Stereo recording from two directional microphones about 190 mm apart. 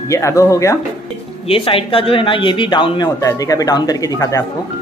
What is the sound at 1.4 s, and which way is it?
Speech, 30° left (ahead or behind).